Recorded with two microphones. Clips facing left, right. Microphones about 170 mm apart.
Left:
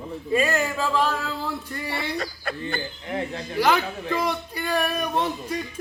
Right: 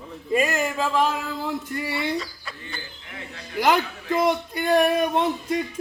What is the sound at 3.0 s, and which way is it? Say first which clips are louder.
Speech: left 11 dB; 35° left (ahead or behind).